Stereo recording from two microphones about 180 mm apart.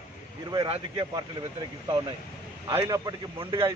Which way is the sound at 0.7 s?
30° right (ahead or behind).